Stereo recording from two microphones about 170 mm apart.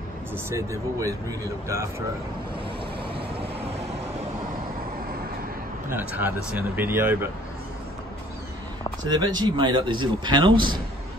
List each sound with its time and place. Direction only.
0.5 s speech: 15° right (ahead or behind)
5.9 s speech: 10° right (ahead or behind)
9.1 s a man's voice: 25° right (ahead or behind)